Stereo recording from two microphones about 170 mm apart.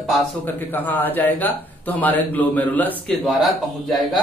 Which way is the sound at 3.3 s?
Centre (ahead or behind).